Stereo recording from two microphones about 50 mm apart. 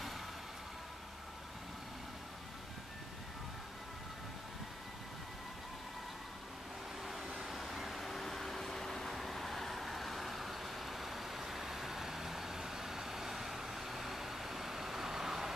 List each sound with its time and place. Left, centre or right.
7.4 s vehicle: centre